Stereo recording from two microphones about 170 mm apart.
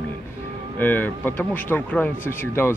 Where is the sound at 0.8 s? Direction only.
10° left (ahead or behind).